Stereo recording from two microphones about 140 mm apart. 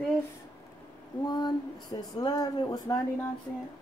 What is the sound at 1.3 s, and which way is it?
A woman's voice, 30° left (ahead or behind).